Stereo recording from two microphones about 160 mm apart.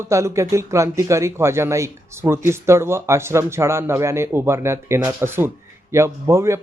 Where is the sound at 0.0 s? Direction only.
20° right (ahead or behind).